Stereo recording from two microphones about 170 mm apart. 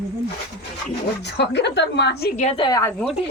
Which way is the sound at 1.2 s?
90° left.